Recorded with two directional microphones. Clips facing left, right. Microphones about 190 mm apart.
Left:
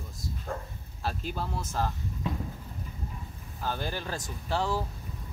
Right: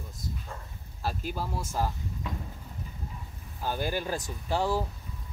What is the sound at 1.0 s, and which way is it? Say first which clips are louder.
Speech: right 1 dB; 5° right (ahead or behind).